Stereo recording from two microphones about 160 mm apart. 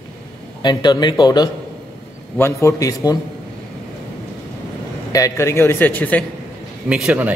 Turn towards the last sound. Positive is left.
turn(degrees=-10)  # may be behind; listen again after turning